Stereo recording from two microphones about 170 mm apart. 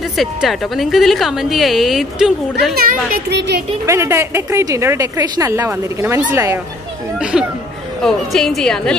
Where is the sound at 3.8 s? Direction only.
15° right (ahead or behind).